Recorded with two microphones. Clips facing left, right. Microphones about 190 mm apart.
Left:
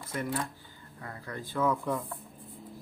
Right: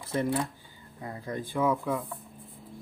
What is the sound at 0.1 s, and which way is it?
Speech, 25° right (ahead or behind).